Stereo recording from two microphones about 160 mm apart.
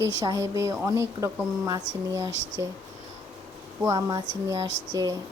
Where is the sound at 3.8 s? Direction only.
25° right (ahead or behind).